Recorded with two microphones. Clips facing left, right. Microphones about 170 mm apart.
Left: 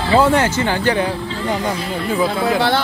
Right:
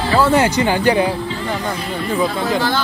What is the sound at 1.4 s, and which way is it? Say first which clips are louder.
Speech: left 5 dB; 15° left (ahead or behind).